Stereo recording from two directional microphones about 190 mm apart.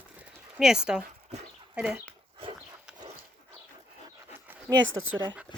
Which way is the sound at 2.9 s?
5° right (ahead or behind).